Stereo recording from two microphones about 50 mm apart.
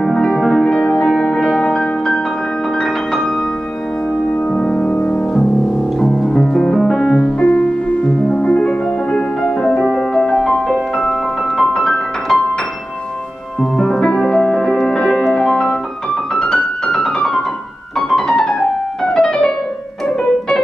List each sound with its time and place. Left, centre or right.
0.0 s music: centre
4.5 s music: centre
5.9 s piano: centre
7.3 s music: left
9.8 s music: centre
13.6 s music: centre
16.3 s keyboard: centre
19.1 s piano: centre